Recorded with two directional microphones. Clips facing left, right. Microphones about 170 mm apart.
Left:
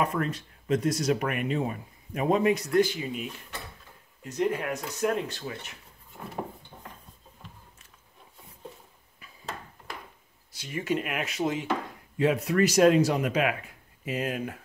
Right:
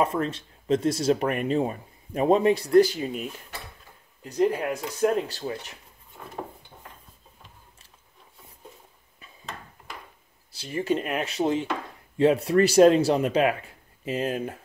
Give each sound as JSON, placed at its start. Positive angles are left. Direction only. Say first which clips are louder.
{"t": 0.0, "sound": "speech", "louder": "right 3 dB", "side_deg": -25}
{"t": 4.2, "sound": "speech", "louder": "right 4 dB", "side_deg": -35}
{"t": 10.5, "sound": "speech", "louder": "right 3 dB", "side_deg": -30}